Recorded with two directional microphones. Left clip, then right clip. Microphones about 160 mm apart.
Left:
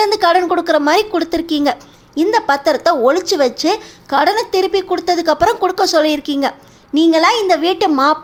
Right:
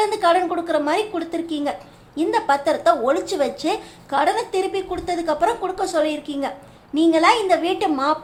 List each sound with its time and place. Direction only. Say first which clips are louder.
0.0 s a woman's voice: left 5 dB; 35° left (ahead or behind)